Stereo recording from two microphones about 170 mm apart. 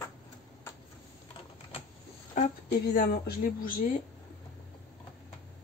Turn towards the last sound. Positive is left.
turn(degrees=55)  # may be behind; listen again after turning